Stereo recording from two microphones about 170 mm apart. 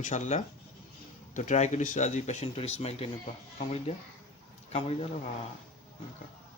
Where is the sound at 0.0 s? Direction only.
45° left (ahead or behind).